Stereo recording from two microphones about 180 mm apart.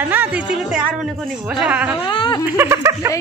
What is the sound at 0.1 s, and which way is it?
A woman's voice, 10° right (ahead or behind).